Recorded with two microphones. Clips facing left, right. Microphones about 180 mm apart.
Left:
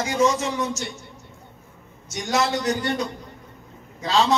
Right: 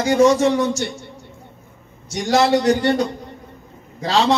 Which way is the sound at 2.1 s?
35° right (ahead or behind).